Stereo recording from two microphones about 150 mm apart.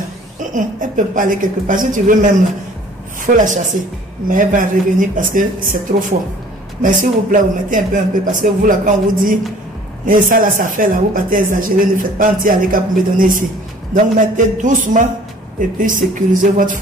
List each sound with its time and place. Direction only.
0.4 s speech: 60° right (ahead or behind)